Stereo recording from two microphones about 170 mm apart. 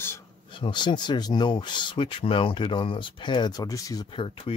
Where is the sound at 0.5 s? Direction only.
30° left (ahead or behind).